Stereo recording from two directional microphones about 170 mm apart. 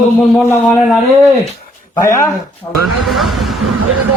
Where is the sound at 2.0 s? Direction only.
15° left (ahead or behind).